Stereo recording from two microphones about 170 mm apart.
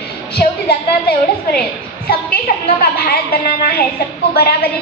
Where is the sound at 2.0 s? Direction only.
65° left (ahead or behind).